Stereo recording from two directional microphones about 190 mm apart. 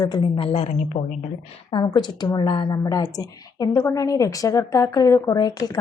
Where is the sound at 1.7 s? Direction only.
25° left (ahead or behind).